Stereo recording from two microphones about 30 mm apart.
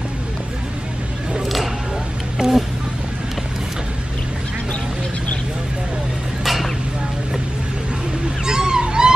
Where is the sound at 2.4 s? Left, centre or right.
Right.